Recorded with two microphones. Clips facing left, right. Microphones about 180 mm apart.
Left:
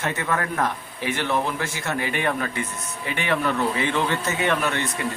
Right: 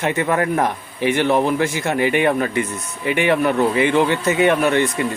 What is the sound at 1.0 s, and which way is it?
Speech, 60° right (ahead or behind).